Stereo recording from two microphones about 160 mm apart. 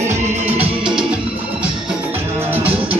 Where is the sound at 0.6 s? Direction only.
5° right (ahead or behind).